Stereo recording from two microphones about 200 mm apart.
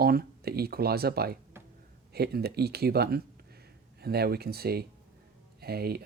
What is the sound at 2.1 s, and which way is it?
Speech, 50° right (ahead or behind).